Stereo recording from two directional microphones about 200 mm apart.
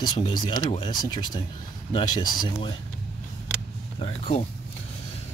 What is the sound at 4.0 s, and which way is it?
Speech, 30° left (ahead or behind).